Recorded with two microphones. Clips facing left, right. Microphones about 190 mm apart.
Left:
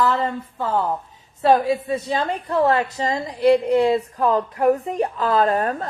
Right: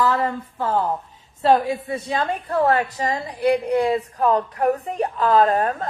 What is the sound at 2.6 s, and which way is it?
A woman's voice, 25° left (ahead or behind).